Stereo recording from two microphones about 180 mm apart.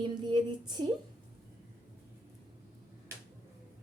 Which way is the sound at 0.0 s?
25° right (ahead or behind).